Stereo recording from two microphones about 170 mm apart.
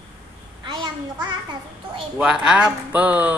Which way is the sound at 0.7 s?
25° right (ahead or behind).